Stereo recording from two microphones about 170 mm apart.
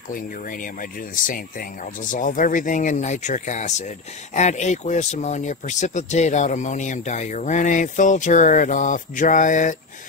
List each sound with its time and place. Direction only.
1.1 s speech: 55° left (ahead or behind)